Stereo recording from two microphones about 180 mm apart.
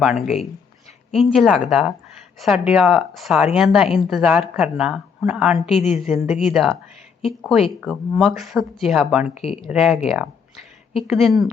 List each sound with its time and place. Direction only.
0.0 s speech: centre (ahead or behind)
9.2 s speech: 35° left (ahead or behind)
9.6 s speech: centre (ahead or behind)